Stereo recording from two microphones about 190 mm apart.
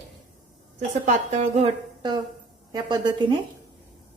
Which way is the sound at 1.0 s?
35° right (ahead or behind).